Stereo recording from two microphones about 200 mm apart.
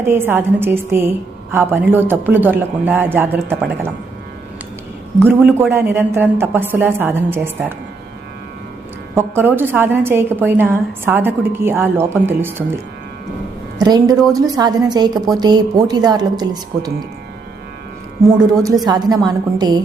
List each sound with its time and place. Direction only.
0.1 s a woman's voice: 10° right (ahead or behind)
5.2 s a woman's voice: 10° right (ahead or behind)
9.1 s a woman's voice: 10° right (ahead or behind)
13.7 s a woman's voice: 20° right (ahead or behind)
18.3 s a woman's voice: 20° right (ahead or behind)